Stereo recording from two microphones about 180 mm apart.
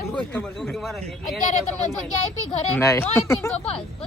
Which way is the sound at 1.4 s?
45° left (ahead or behind).